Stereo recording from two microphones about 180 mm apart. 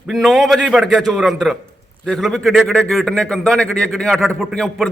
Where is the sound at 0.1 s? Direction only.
Centre (ahead or behind).